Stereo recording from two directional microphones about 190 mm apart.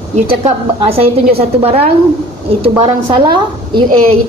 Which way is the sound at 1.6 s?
30° right (ahead or behind).